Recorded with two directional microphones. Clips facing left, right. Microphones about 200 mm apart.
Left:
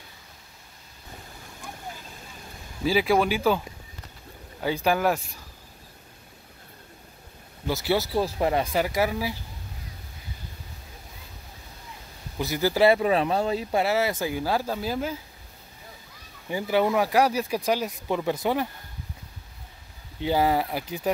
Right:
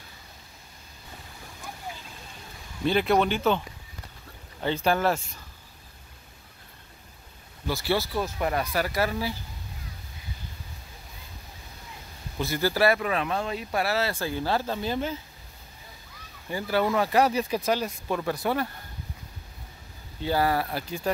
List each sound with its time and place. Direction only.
2.8 s speech: 5° left (ahead or behind)
7.6 s speech: 20° left (ahead or behind)
12.4 s speech: 15° left (ahead or behind)
16.4 s speech: 15° left (ahead or behind)
20.2 s speech: 15° left (ahead or behind)